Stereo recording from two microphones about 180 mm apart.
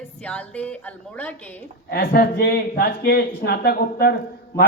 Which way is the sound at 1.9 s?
60° left (ahead or behind).